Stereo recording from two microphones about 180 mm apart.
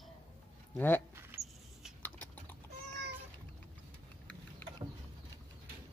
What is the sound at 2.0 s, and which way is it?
Typing, 10° left (ahead or behind).